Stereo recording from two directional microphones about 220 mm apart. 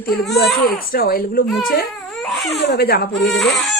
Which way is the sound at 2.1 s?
Centre (ahead or behind).